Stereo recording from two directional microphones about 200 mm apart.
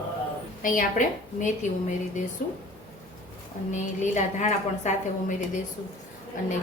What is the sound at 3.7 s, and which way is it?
A woman's voice, 35° left (ahead or behind).